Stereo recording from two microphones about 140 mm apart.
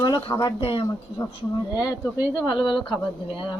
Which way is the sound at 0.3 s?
40° left (ahead or behind).